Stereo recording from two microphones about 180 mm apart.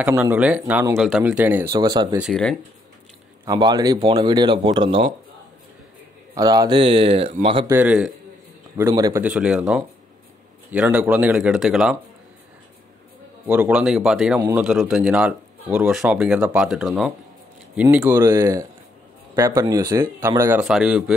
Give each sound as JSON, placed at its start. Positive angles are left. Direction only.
{"t": 0.0, "sound": "speech", "side_deg": -10}
{"t": 1.8, "sound": "speech", "side_deg": -25}
{"t": 2.1, "sound": "speech", "side_deg": 0}
{"t": 3.4, "sound": "speech", "side_deg": -20}
{"t": 6.3, "sound": "speech", "side_deg": -20}
{"t": 7.6, "sound": "speech", "side_deg": -10}
{"t": 8.7, "sound": "speech", "side_deg": -15}
{"t": 9.2, "sound": "speech", "side_deg": -5}
{"t": 13.5, "sound": "speech", "side_deg": -5}